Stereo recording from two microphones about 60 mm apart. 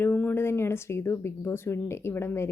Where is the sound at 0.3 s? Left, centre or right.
Left.